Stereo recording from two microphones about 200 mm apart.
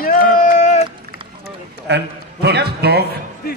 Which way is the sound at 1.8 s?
55° right (ahead or behind).